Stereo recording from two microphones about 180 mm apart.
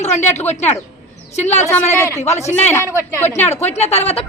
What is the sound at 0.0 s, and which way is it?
Speech, 40° left (ahead or behind).